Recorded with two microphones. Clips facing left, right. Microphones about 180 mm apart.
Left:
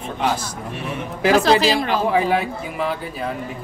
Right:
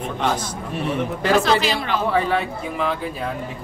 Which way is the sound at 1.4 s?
35° left (ahead or behind).